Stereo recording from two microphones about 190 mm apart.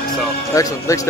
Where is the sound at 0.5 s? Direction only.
15° left (ahead or behind).